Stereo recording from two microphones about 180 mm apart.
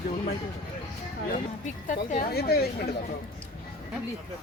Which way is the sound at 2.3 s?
60° left (ahead or behind).